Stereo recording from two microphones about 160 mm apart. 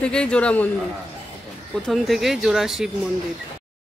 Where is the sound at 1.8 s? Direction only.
Centre (ahead or behind).